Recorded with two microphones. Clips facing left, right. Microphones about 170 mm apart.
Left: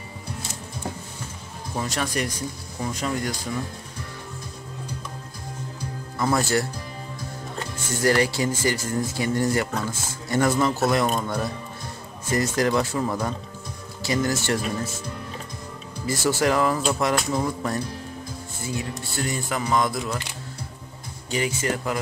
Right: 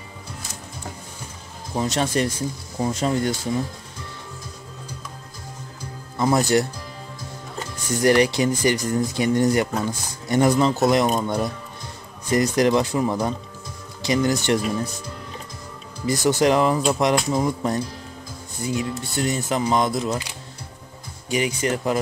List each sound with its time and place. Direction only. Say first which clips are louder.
1.8 s speech: right 5 dB; 25° right (ahead or behind)
6.1 s speech: right 4 dB; 15° right (ahead or behind)
7.9 s speech: right 4 dB; 20° right (ahead or behind)
16.1 s speech: right 4 dB; 20° right (ahead or behind)
21.3 s speech: right 3 dB; 15° right (ahead or behind)